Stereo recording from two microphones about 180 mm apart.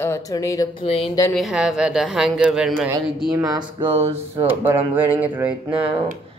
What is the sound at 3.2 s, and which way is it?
Speech, 20° right (ahead or behind).